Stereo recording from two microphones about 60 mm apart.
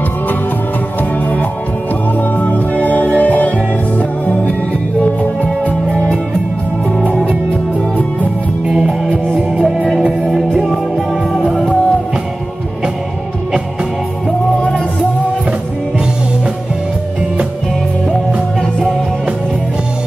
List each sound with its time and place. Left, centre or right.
2.1 s music: left
5.0 s music: left
8.6 s music: centre